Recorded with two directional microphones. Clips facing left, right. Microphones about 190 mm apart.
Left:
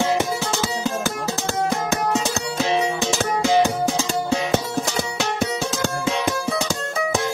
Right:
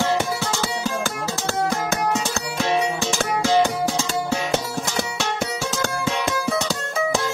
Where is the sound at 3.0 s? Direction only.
15° left (ahead or behind).